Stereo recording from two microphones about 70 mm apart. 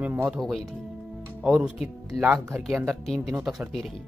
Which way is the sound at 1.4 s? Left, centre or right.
Centre.